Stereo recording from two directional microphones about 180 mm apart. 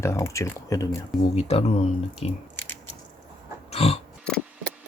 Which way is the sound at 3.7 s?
35° left (ahead or behind).